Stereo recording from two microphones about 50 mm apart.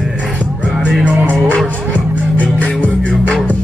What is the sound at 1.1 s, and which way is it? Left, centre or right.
Music, right.